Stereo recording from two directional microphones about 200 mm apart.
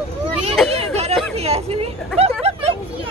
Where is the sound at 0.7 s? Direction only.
30° right (ahead or behind).